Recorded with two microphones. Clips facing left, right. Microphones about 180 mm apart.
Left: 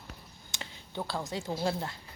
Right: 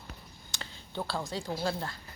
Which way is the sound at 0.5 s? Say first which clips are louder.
Even; 20° left (ahead or behind).